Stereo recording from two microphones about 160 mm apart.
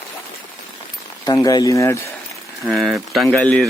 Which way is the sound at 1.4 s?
25° left (ahead or behind).